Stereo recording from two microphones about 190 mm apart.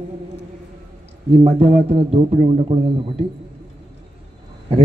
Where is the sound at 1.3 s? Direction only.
35° right (ahead or behind).